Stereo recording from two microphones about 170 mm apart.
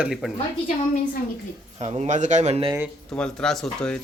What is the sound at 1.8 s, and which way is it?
Speech, 40° right (ahead or behind).